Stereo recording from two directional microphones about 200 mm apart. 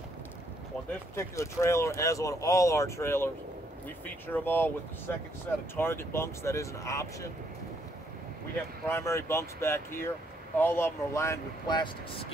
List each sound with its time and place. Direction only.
1.1 s speech: 15° left (ahead or behind)
8.8 s speech: 15° left (ahead or behind)